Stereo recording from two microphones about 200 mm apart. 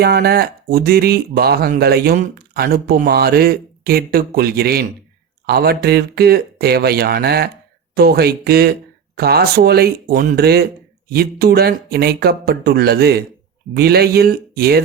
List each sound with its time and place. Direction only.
0.0 s speech: 50° right (ahead or behind)